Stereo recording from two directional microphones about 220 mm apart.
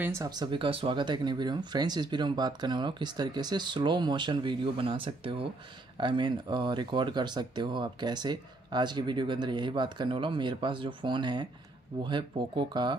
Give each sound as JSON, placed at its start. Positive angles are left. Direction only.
{"t": 0.0, "sound": "speech", "side_deg": -15}